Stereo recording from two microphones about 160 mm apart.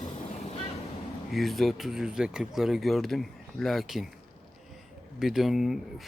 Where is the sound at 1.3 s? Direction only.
Centre (ahead or behind).